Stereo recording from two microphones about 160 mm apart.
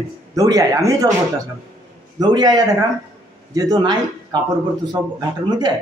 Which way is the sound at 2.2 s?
25° right (ahead or behind).